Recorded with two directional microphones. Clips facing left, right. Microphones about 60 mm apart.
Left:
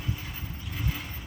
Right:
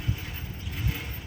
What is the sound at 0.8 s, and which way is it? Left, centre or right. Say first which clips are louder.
Vehicle: even; centre.